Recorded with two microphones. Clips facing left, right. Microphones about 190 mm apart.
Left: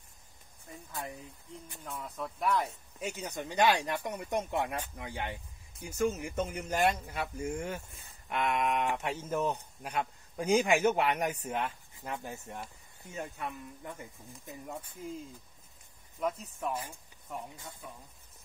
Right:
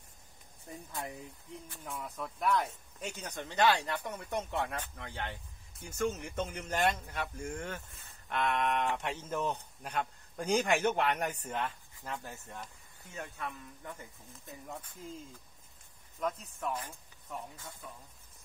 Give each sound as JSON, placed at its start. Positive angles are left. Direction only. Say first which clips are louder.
{"t": 1.9, "sound": "speech", "louder": "left 1 dB", "side_deg": 0}
{"t": 16.2, "sound": "speech", "louder": "left 2 dB", "side_deg": 10}